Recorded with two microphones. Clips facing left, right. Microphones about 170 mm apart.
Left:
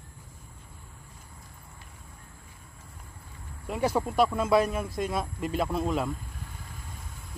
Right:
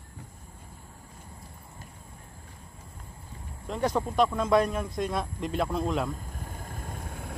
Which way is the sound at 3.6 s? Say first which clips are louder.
Left 1 dB; 10° left (ahead or behind).